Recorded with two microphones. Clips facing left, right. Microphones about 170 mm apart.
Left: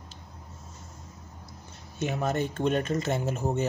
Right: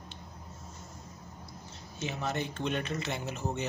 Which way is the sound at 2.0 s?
50° left (ahead or behind).